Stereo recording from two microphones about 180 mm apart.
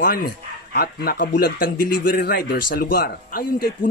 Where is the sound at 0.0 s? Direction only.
55° left (ahead or behind).